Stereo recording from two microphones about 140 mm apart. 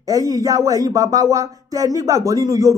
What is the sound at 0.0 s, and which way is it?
A man's voice, 25° right (ahead or behind).